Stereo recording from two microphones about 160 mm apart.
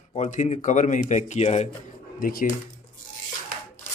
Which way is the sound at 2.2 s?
60° left (ahead or behind).